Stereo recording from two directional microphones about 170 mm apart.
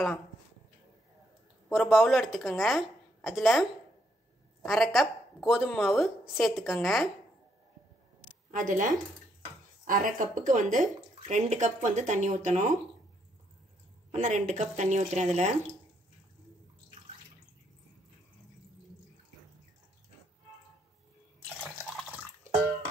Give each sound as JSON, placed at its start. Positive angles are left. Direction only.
{"t": 1.7, "sound": "a woman's voice", "side_deg": 0}
{"t": 4.6, "sound": "a woman's voice", "side_deg": 0}
{"t": 8.5, "sound": "speech", "side_deg": -50}
{"t": 14.1, "sound": "speech", "side_deg": -45}
{"t": 22.5, "sound": "music", "side_deg": -45}